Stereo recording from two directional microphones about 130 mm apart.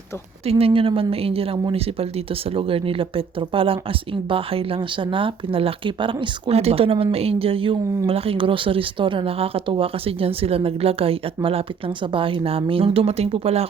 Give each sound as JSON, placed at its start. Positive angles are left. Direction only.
{"t": 0.6, "sound": "speech", "side_deg": -45}